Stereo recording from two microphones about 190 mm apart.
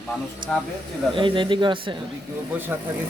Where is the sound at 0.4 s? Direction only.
25° right (ahead or behind).